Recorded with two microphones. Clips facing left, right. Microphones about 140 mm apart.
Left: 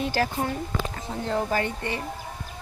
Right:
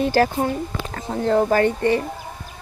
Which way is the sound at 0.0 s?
50° right (ahead or behind).